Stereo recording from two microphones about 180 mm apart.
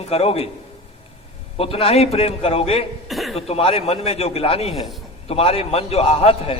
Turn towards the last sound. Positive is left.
turn(degrees=35)  # may be behind; listen again after turning